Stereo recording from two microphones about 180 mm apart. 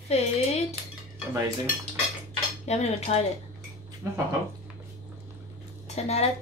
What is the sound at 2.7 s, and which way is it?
Speech, 35° left (ahead or behind).